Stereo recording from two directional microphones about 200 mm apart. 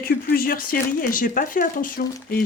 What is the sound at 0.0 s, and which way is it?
Speech, 50° left (ahead or behind).